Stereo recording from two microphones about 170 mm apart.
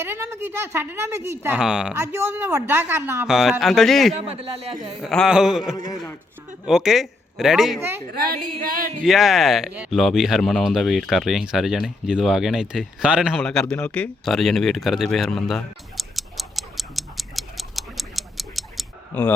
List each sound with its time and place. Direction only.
0.0 s a woman's voice: 15° right (ahead or behind)
3.2 s speech: centre (ahead or behind)
4.2 s speech: 35° right (ahead or behind)
5.0 s a man's voice: centre (ahead or behind)
9.0 s speech: centre (ahead or behind)